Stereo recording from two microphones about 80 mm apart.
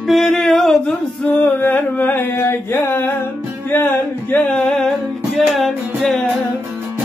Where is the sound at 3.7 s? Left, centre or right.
Left; by 6.3 s centre.